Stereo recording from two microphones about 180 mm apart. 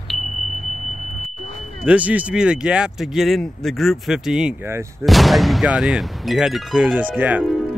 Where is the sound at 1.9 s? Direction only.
10° right (ahead or behind).